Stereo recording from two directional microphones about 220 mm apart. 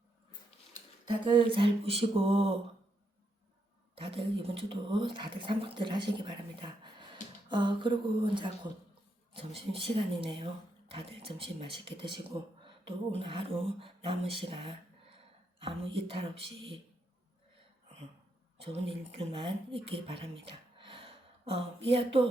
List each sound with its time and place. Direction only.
0.7 s a sound: 20° right (ahead or behind)
3.9 s speech: 25° right (ahead or behind)
9.7 s speech: 25° right (ahead or behind)
18.5 s speech: 25° right (ahead or behind)